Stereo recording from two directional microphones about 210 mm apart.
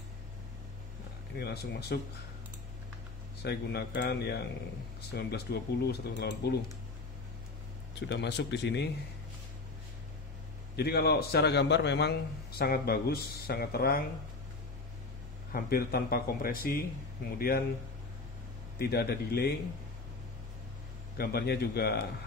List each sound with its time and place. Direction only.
1.3 s a man's voice: 50° left (ahead or behind)
3.4 s a man's voice: 55° left (ahead or behind)
8.1 s speech: 55° left (ahead or behind)
10.8 s a man's voice: 50° left (ahead or behind)
15.5 s a man's voice: 45° left (ahead or behind)
18.8 s a man's voice: 50° left (ahead or behind)
21.2 s a man's voice: 50° left (ahead or behind)